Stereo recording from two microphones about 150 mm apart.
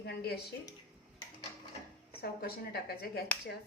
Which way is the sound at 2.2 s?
90° left.